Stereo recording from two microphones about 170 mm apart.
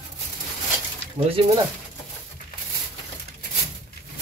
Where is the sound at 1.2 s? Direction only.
35° right (ahead or behind).